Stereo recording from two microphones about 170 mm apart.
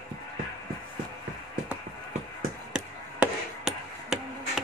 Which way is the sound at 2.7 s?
5° right (ahead or behind).